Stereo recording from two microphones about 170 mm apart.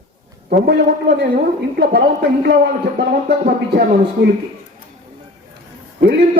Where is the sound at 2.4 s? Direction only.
85° right.